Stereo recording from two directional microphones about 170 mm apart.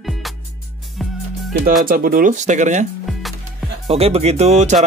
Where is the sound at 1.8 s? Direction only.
55° right (ahead or behind).